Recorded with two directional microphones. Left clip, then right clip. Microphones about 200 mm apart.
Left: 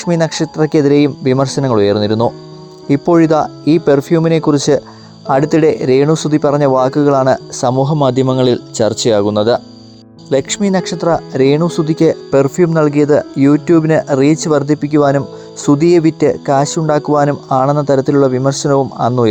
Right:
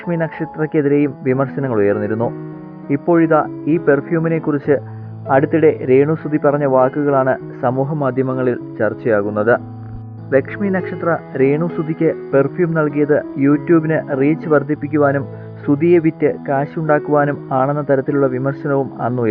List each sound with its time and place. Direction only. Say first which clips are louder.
0.0 s speech: left 6 dB; 35° left (ahead or behind)